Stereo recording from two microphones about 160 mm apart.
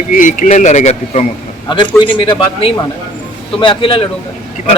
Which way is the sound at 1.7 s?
30° left (ahead or behind).